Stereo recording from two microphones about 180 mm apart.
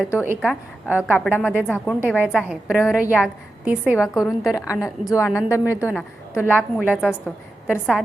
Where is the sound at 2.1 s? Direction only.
10° right (ahead or behind).